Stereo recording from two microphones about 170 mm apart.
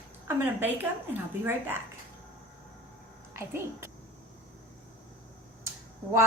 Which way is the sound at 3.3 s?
15° right (ahead or behind).